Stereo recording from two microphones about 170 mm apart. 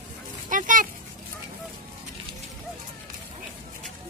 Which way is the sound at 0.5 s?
50° right (ahead or behind).